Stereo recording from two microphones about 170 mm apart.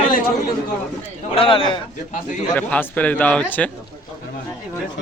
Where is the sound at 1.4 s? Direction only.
30° left (ahead or behind).